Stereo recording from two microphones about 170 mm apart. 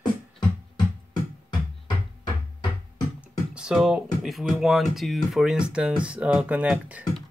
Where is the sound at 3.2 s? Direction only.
5° right (ahead or behind).